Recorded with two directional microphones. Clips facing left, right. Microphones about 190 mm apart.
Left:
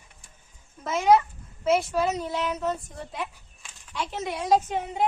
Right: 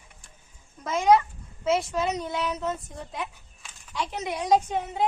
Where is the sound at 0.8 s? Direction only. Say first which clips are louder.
Even; 5° left (ahead or behind).